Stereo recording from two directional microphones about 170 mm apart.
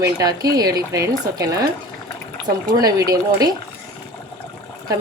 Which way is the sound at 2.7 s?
20° right (ahead or behind).